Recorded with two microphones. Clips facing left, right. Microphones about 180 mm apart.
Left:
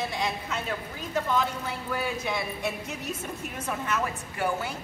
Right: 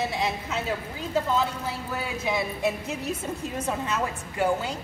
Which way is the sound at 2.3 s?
25° right (ahead or behind).